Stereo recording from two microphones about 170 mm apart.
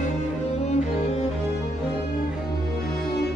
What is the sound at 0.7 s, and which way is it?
Music, 40° left (ahead or behind).